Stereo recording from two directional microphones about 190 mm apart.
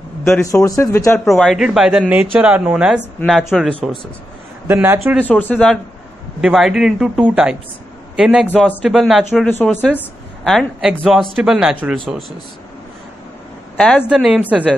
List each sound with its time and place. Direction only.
0.2 s a man's voice: 5° left (ahead or behind)
0.5 s speech: 15° left (ahead or behind)
1.2 s speech: centre (ahead or behind)
4.6 s a man's voice: 10° right (ahead or behind)
5.2 s speech: 10° left (ahead or behind)
13.7 s speech: 5° left (ahead or behind)